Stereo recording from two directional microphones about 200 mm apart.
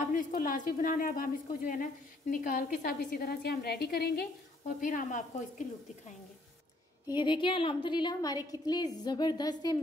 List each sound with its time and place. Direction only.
0.1 s a woman's voice: 45° left (ahead or behind)
7.2 s a woman's voice: 25° left (ahead or behind)